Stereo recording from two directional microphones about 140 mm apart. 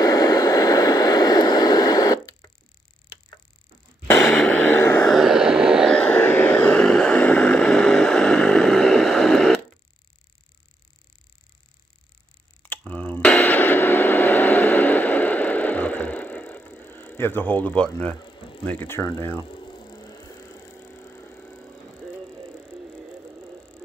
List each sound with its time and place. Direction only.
0.0 s vehicle: 25° left (ahead or behind)
4.3 s a sound: 10° left (ahead or behind)
5.0 s a sound: centre (ahead or behind)
5.9 s vehicle: 10° left (ahead or behind)
12.6 s a sound: 10° left (ahead or behind)
18.2 s mechanisms: 35° left (ahead or behind)
18.7 s speech: 15° left (ahead or behind)
19.4 s mechanisms: 35° left (ahead or behind); by 21.7 s 10° left (ahead or behind)
22.0 s ratchet: 5° left (ahead or behind)
22.8 s mechanisms: 5° right (ahead or behind)